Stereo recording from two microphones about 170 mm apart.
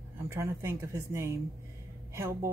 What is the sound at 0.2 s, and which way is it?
Speech, 15° right (ahead or behind).